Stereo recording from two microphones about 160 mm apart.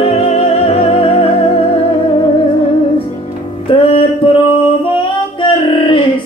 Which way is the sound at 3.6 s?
35° left (ahead or behind).